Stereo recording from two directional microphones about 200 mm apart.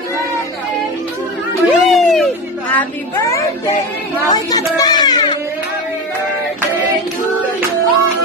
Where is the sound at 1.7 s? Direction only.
Centre (ahead or behind).